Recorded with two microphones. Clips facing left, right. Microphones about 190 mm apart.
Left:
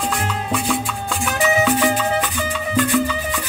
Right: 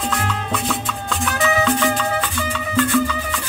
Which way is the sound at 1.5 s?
15° left (ahead or behind).